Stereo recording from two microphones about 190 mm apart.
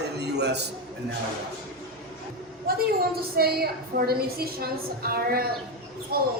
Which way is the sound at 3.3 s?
55° right (ahead or behind).